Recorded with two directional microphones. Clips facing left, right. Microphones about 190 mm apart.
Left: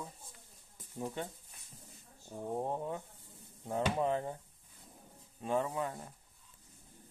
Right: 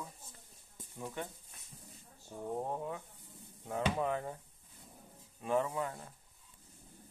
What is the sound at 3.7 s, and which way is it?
Speech, 30° left (ahead or behind).